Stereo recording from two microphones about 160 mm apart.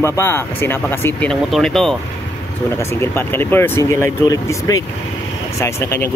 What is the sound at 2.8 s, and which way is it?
Speech, 15° left (ahead or behind).